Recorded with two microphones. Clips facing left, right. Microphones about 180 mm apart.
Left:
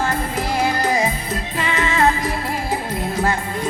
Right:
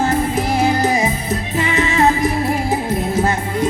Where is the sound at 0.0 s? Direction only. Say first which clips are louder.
Right 5 dB; 20° right (ahead or behind).